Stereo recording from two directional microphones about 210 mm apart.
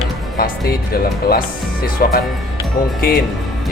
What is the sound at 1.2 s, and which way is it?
Speech, 45° left (ahead or behind).